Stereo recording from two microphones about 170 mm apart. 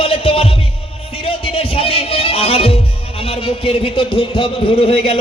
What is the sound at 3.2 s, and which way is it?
A man's voice, 35° left (ahead or behind).